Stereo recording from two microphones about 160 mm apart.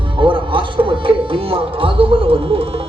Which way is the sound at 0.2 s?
30° right (ahead or behind).